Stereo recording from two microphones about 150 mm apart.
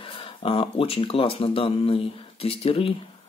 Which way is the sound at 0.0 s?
35° left (ahead or behind).